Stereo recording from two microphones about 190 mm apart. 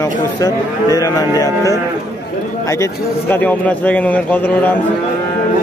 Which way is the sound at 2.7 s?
15° left (ahead or behind).